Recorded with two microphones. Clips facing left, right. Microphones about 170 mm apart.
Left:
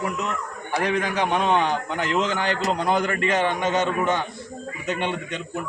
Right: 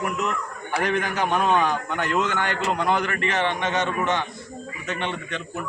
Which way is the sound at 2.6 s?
35° left (ahead or behind).